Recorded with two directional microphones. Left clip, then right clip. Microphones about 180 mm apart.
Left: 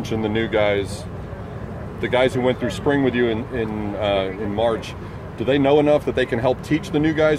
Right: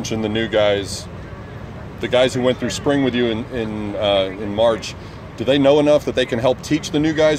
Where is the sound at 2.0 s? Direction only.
35° right (ahead or behind).